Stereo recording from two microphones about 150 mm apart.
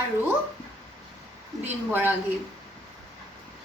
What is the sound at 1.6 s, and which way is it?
Speech, 10° right (ahead or behind).